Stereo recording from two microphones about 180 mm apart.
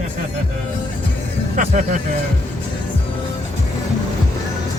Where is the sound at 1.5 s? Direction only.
45° right (ahead or behind).